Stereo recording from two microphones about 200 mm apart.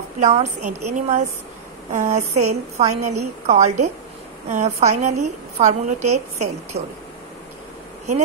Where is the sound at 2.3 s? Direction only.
90° right.